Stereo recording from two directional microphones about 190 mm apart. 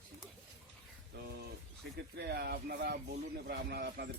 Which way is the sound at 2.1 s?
60° right (ahead or behind).